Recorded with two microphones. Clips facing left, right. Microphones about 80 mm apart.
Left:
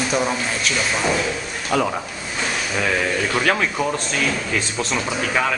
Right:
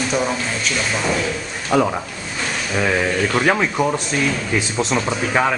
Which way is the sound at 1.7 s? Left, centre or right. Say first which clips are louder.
Right 3 dB; centre.